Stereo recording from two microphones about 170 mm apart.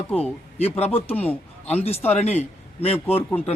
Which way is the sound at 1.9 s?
35° left (ahead or behind).